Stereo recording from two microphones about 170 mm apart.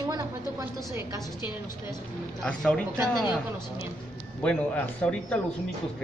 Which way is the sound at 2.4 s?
5° left (ahead or behind).